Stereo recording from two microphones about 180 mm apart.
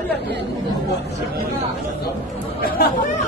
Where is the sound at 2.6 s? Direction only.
55° left (ahead or behind).